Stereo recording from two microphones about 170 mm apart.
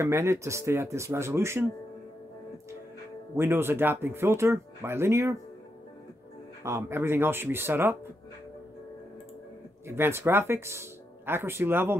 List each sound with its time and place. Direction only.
0.0 s speech: 15° right (ahead or behind)
3.3 s speech: 15° right (ahead or behind)
6.6 s speech: 15° right (ahead or behind)
9.8 s speech: 15° right (ahead or behind)